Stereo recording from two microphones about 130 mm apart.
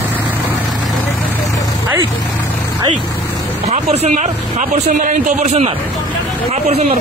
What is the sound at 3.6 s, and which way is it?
Speech, 55° right (ahead or behind).